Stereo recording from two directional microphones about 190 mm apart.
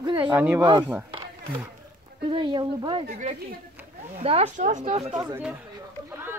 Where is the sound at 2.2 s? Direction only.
25° right (ahead or behind).